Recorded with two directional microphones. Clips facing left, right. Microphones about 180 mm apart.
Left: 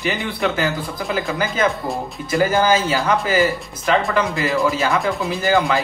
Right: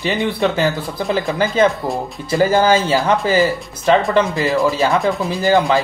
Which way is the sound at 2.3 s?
30° right (ahead or behind).